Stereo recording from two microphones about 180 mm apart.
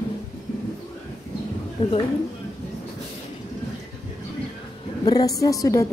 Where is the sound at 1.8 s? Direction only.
30° left (ahead or behind).